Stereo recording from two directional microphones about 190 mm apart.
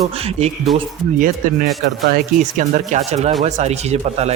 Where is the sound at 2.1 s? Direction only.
45° right (ahead or behind).